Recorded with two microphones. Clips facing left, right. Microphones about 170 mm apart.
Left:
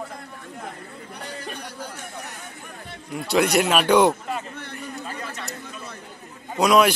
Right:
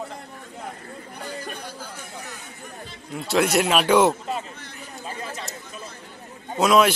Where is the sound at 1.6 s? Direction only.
65° left (ahead or behind).